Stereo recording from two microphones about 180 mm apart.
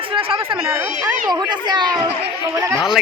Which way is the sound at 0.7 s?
15° right (ahead or behind).